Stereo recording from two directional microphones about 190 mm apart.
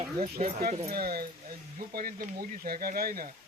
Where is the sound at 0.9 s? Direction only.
50° right (ahead or behind).